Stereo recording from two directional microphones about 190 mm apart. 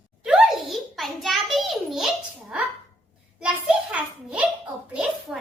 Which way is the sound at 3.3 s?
5° right (ahead or behind).